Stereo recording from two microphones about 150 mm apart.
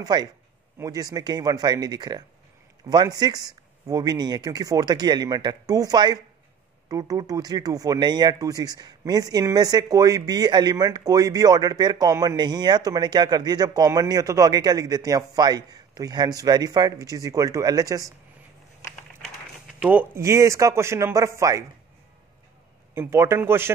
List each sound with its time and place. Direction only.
0.0 s speech: 30° right (ahead or behind)
19.8 s speech: 10° right (ahead or behind)
22.9 s speech: 15° right (ahead or behind)